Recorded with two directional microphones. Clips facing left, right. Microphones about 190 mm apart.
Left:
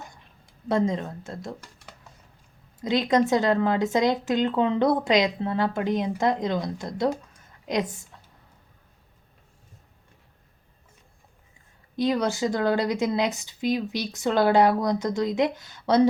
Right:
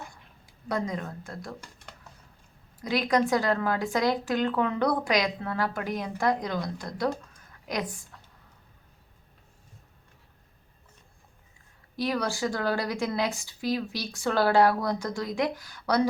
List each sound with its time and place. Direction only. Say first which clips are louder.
0.7 s speech: left 6 dB; 25° left (ahead or behind)
2.8 s speech: left 3 dB; 20° left (ahead or behind)
11.9 s speech: left 5 dB; 20° left (ahead or behind)